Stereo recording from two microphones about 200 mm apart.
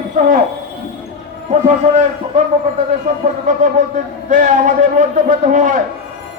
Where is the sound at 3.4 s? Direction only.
40° right (ahead or behind).